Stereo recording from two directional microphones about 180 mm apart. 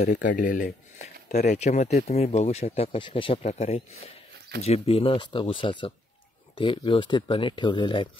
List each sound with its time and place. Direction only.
0.0 s speech: 50° left (ahead or behind); by 8.1 s 25° left (ahead or behind)